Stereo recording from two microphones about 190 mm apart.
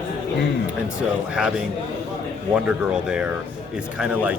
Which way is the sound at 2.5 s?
5° right (ahead or behind).